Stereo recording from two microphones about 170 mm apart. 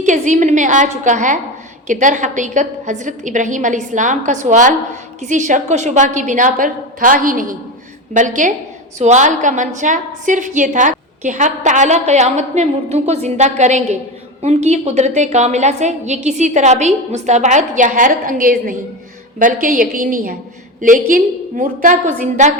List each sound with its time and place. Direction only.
0.0 s a woman's voice: 45° right (ahead or behind)